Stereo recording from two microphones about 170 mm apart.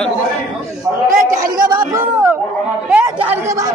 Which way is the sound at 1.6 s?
25° right (ahead or behind).